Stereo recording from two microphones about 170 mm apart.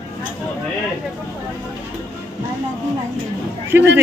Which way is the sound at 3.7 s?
10° right (ahead or behind).